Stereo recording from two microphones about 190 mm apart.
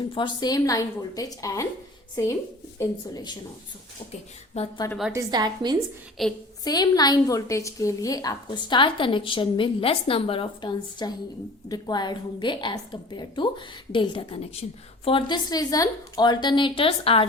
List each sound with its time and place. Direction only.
0.1 s a woman's voice: 25° left (ahead or behind)
4.6 s a woman's voice: 35° left (ahead or behind)
5.1 s a woman's voice: 20° right (ahead or behind)
6.2 s a woman's voice: centre (ahead or behind)
6.7 s a woman's voice: 20° left (ahead or behind)